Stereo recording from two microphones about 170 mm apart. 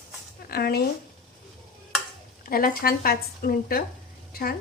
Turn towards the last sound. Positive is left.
turn(degrees=60)  # may be behind; listen again after turning